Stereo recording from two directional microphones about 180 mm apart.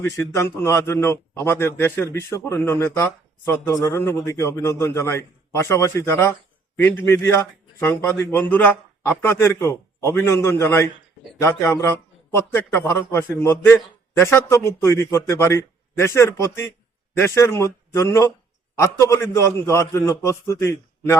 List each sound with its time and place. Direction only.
0.0 s a man's voice: 15° left (ahead or behind)